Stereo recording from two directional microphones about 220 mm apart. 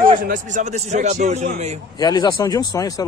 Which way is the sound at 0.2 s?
35° right (ahead or behind).